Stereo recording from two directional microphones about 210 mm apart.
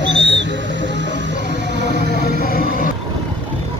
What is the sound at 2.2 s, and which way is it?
Music, 45° left (ahead or behind).